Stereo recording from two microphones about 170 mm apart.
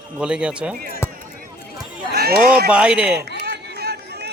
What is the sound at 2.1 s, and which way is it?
Speech, 65° right (ahead or behind).